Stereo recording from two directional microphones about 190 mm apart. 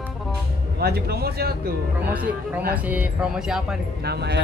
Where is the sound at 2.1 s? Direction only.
10° right (ahead or behind).